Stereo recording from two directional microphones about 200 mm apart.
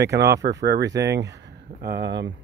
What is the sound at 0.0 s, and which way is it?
Speech, 55° right (ahead or behind).